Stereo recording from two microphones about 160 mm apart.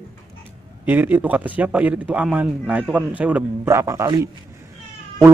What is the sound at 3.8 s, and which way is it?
Speech, 20° right (ahead or behind).